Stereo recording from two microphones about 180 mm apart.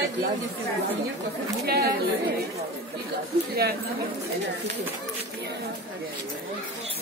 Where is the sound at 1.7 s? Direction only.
60° right (ahead or behind).